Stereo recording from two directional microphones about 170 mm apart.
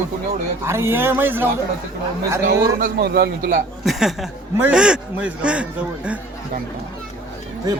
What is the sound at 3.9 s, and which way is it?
Speech, centre (ahead or behind).